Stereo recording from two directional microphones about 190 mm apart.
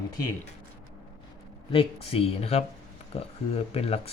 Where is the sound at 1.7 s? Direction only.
30° left (ahead or behind).